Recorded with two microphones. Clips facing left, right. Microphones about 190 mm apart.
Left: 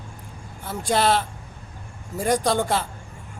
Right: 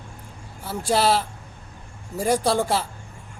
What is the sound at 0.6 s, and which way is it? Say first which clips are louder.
Speech: even; 5° right (ahead or behind).